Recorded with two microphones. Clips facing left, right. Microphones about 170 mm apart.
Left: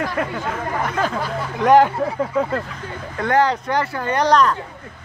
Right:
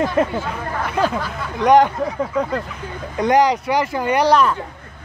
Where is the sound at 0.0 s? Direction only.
25° right (ahead or behind).